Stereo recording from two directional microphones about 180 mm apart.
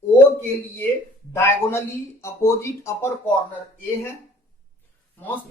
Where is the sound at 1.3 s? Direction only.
15° left (ahead or behind).